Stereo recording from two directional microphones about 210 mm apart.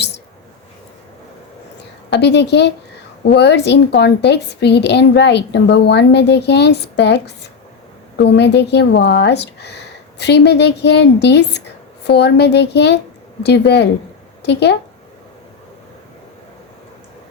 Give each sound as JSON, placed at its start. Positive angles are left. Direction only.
{"t": 2.1, "sound": "a woman's voice", "side_deg": 55}